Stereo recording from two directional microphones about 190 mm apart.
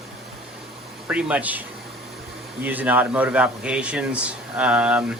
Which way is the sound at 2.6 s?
10° right (ahead or behind).